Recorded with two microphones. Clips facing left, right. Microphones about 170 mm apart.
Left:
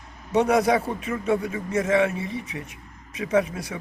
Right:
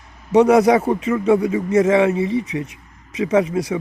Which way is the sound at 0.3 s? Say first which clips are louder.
Right 7 dB; 90° right.